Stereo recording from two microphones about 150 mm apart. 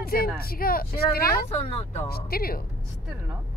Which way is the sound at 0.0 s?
90° left.